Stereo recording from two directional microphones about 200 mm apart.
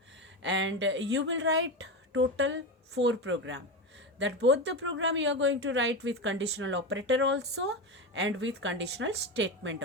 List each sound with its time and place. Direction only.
0.2 s a woman's voice: 65° right (ahead or behind)